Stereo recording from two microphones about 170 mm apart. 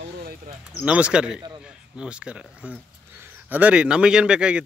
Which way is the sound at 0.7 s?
5° right (ahead or behind).